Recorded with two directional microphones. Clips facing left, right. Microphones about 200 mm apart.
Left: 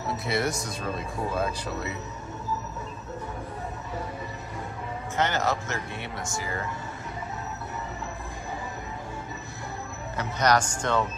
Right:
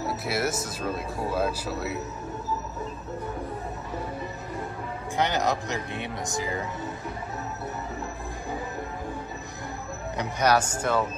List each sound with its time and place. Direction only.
0.1 s speech: 5° right (ahead or behind)
5.1 s speech: 15° right (ahead or behind)
10.1 s speech: 10° right (ahead or behind)